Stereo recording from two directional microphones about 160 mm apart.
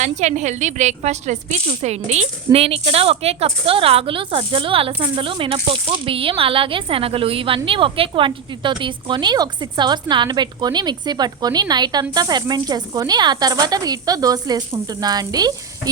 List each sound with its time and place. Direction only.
0.0 s a woman's voice: 45° right (ahead or behind); by 15.5 s 25° right (ahead or behind)